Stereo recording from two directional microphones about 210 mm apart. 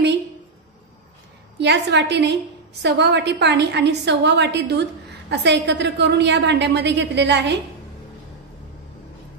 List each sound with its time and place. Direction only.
1.6 s a woman's voice: 55° right (ahead or behind)